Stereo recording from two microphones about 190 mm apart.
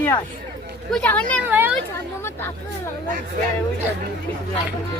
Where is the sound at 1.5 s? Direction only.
10° right (ahead or behind).